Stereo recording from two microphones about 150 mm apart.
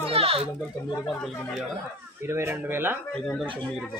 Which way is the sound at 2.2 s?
15° right (ahead or behind).